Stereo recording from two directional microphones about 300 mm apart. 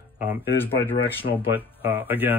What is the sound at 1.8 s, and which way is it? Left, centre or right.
Speech, centre.